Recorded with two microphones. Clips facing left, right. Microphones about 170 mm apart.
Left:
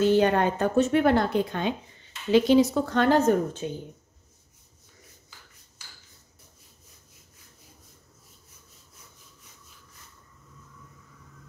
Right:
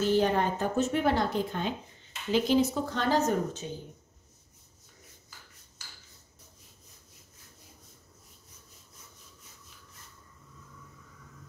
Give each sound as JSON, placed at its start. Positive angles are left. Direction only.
{"t": 0.0, "sound": "a woman's voice", "side_deg": 65}